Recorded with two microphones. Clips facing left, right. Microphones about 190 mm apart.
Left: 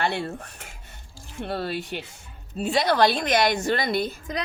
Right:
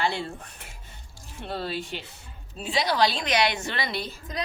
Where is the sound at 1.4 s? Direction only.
55° left (ahead or behind).